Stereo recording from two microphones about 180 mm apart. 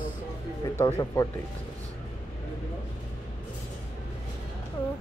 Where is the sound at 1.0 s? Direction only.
20° left (ahead or behind).